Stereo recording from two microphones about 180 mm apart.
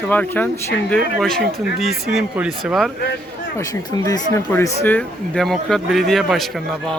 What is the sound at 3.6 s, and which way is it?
Speech, 20° left (ahead or behind).